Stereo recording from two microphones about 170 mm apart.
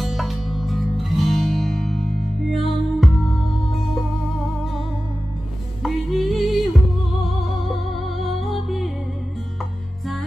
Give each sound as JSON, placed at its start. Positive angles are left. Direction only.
{"t": 0.0, "sound": "music", "side_deg": 0}
{"t": 5.8, "sound": "music", "side_deg": 0}
{"t": 8.2, "sound": "music", "side_deg": 0}